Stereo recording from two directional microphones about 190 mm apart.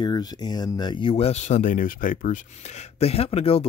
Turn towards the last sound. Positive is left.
turn(degrees=30)  # may be behind; listen again after turning